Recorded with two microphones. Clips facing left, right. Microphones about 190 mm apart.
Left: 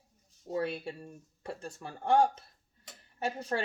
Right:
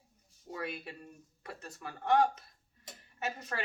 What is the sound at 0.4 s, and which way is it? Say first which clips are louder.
Speech: left 7 dB; 30° left (ahead or behind).